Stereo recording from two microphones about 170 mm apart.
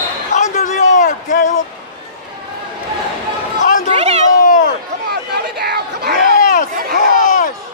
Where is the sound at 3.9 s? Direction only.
40° right (ahead or behind).